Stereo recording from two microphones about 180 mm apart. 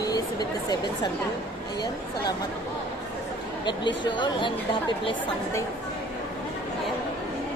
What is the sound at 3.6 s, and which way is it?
Speech, 25° left (ahead or behind).